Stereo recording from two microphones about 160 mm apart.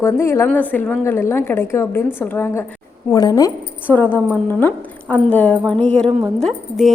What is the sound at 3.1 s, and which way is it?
Speech, 25° left (ahead or behind).